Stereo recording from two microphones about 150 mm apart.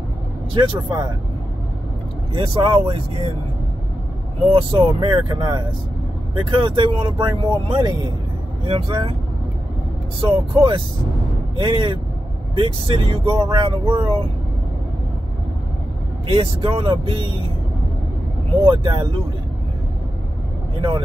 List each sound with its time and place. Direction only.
0.6 s speech: 30° right (ahead or behind)
2.3 s speech: 35° right (ahead or behind)
4.5 s speech: 35° right (ahead or behind)
10.2 s speech: 40° right (ahead or behind)
16.3 s speech: 40° right (ahead or behind)
18.7 s speech: 35° right (ahead or behind)
20.7 s speech: 35° right (ahead or behind)